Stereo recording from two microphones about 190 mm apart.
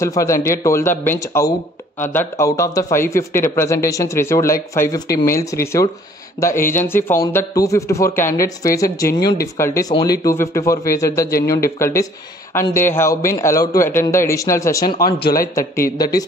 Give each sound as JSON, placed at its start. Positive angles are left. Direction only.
{"t": 0.0, "sound": "speech", "side_deg": 15}
{"t": 11.2, "sound": "speech", "side_deg": 50}
{"t": 11.8, "sound": "speech", "side_deg": 15}
{"t": 14.9, "sound": "speech", "side_deg": 50}